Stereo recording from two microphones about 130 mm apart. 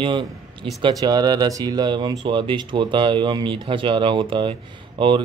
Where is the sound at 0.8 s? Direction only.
30° right (ahead or behind).